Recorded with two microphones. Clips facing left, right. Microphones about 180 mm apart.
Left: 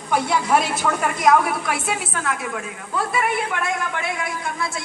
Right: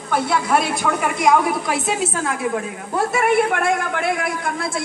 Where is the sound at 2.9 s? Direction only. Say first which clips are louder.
Right 5 dB; 45° right (ahead or behind).